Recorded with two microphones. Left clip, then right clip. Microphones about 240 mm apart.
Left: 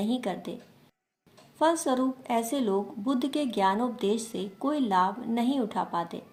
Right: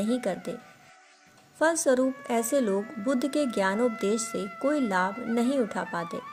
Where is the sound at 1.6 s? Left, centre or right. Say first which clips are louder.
Right 2 dB; right.